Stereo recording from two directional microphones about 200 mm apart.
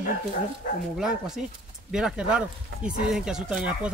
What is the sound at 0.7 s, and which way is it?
Speech, 40° left (ahead or behind).